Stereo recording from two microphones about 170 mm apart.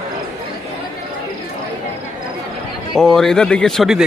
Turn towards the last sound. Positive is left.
turn(degrees=0)  # may be behind; listen again after turning